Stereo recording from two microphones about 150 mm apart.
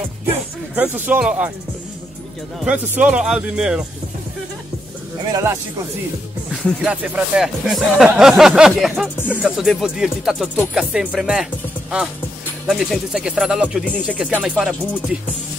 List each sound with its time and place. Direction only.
0.3 s speech: 15° right (ahead or behind)
2.6 s speech: 10° right (ahead or behind)
5.3 s speech: 20° right (ahead or behind)
6.8 s speech: 10° right (ahead or behind)
12.6 s speech: centre (ahead or behind)